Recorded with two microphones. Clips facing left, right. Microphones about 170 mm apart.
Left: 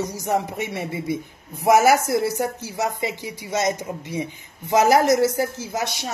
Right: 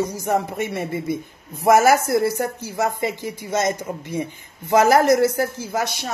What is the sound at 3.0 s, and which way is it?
Speech, 50° right (ahead or behind).